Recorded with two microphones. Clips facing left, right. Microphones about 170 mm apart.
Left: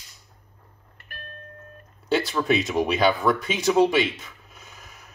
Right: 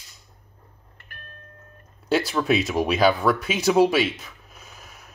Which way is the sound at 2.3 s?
5° right (ahead or behind).